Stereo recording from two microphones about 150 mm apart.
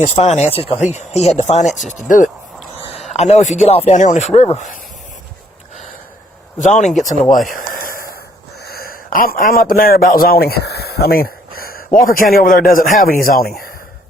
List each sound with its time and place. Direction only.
0.2 s speech: 45° left (ahead or behind)
0.8 s speech: 50° left (ahead or behind)
3.1 s speech: 50° left (ahead or behind)
6.6 s speech: 55° left (ahead or behind)
7.5 s a sound: 70° left (ahead or behind)
8.6 s speech: 90° left